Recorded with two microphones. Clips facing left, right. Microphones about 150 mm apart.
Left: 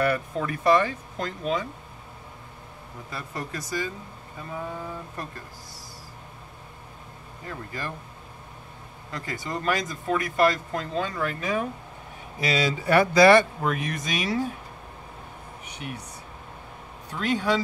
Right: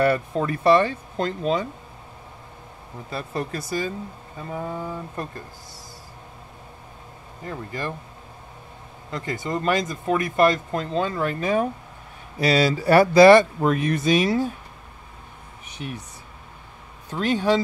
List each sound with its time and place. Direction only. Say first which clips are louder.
0.0 s speech: right 4 dB; 30° right (ahead or behind)
3.1 s speech: right 6 dB; 25° right (ahead or behind)
7.4 s speech: right 4 dB; 20° right (ahead or behind)
9.1 s speech: right 5 dB; 25° right (ahead or behind)
15.8 s speech: right 3 dB; 30° right (ahead or behind)
17.1 s speech: right 4 dB; 25° right (ahead or behind)